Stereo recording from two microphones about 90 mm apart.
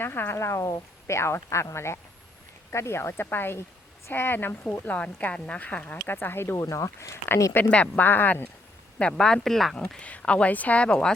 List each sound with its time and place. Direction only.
0.0 s a woman's voice: 25° left (ahead or behind)
7.5 s speech: 15° left (ahead or behind)
9.0 s a woman's voice: 10° left (ahead or behind)